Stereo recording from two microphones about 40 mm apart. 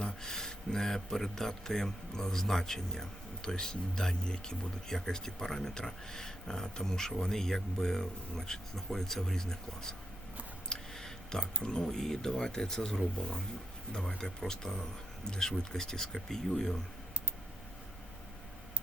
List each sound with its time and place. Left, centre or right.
0.0 s speech: centre
10.7 s a sound: centre
11.6 s speech: left
14.2 s speech: centre